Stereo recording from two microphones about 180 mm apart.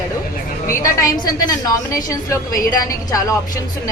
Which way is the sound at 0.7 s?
20° left (ahead or behind).